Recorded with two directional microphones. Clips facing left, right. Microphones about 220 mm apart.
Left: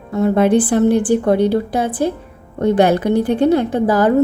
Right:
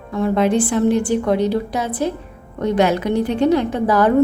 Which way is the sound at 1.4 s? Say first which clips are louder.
Left 4 dB; 30° left (ahead or behind).